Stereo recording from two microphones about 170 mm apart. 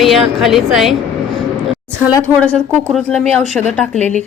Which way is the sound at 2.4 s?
5° left (ahead or behind).